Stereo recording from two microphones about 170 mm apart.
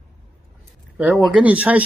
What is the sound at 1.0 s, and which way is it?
Speech, 5° right (ahead or behind).